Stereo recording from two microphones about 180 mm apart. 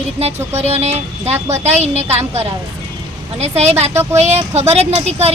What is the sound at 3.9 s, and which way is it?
Speech, 15° right (ahead or behind).